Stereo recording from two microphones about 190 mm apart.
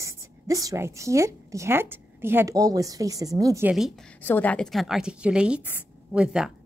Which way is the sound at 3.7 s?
Centre (ahead or behind).